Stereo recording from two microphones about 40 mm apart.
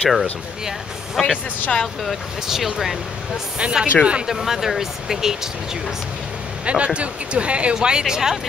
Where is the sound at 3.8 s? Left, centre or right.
Right.